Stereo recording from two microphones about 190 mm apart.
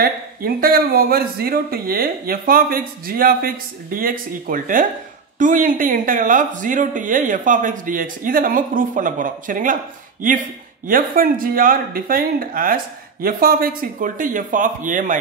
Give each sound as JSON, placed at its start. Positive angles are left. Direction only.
{"t": 0.0, "sound": "speech", "side_deg": -50}
{"t": 10.9, "sound": "speech", "side_deg": -50}